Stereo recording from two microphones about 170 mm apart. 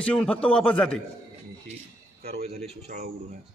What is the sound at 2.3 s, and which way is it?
Speech, 40° right (ahead or behind).